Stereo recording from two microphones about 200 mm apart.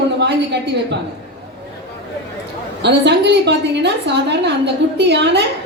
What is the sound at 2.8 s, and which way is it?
A woman's voice, 60° right (ahead or behind).